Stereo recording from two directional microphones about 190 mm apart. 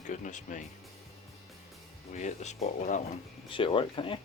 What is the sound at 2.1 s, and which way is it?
Speech, 35° left (ahead or behind).